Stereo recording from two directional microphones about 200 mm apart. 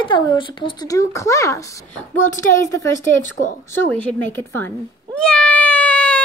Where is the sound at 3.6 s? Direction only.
10° left (ahead or behind).